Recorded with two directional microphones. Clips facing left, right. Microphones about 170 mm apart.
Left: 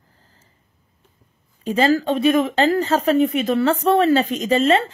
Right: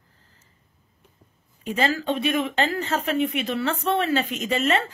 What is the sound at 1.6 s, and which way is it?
Speech, 35° left (ahead or behind).